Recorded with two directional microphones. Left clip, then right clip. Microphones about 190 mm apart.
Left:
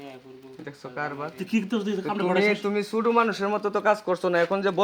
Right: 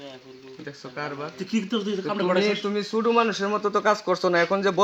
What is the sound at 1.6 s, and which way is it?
Speech, 20° left (ahead or behind).